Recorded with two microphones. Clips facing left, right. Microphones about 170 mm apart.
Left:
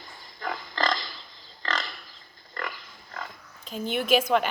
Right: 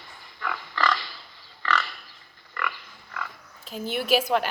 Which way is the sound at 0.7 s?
35° left (ahead or behind).